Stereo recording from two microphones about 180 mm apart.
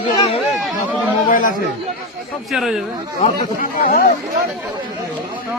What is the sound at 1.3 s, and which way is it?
Chatter, 50° left (ahead or behind).